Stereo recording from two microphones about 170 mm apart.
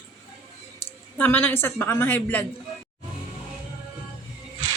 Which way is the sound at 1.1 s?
10° left (ahead or behind).